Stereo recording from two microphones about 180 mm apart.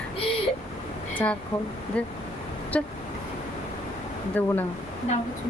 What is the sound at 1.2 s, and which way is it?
Vehicle, 10° left (ahead or behind).